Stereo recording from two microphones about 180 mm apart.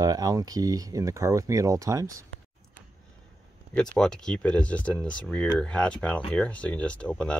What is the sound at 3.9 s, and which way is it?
Speech, 5° left (ahead or behind).